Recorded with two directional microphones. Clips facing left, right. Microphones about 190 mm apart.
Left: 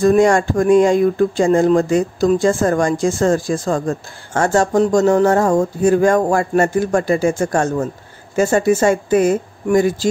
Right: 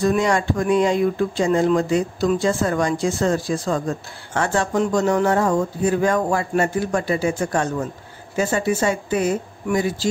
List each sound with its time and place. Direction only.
0.0 s speech: 45° left (ahead or behind)